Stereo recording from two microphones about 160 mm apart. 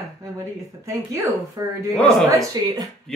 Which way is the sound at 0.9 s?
20° right (ahead or behind).